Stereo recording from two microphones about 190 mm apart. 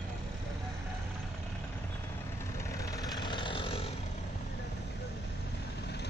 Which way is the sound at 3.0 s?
25° left (ahead or behind).